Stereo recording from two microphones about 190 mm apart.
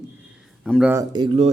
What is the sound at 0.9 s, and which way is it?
Speech, 20° right (ahead or behind).